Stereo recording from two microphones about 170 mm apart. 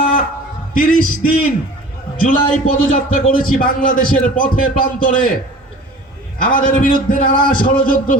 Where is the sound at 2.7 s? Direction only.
50° left (ahead or behind).